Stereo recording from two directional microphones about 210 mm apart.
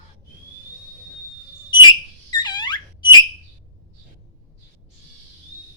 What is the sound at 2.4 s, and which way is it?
Squeak, 20° left (ahead or behind).